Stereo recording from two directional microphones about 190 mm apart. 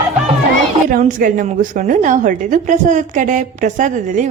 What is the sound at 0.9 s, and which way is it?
A woman's voice, 50° right (ahead or behind).